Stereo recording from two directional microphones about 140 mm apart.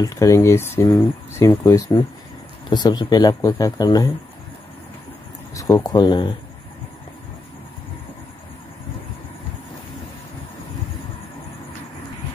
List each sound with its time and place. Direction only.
0.0 s speech: 25° left (ahead or behind)
5.5 s speech: 25° left (ahead or behind)